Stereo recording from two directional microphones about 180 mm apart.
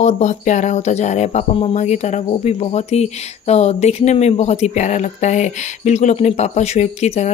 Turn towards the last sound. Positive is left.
turn(degrees=40)  # may be behind; listen again after turning